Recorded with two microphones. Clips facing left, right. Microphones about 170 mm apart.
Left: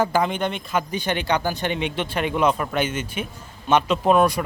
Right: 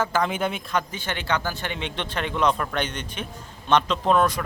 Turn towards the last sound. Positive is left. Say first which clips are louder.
# left 3 dB
turn(degrees=10)  # may be behind; listen again after turning